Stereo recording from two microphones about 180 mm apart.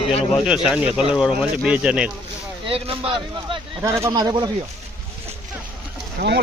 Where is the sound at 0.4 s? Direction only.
5° right (ahead or behind).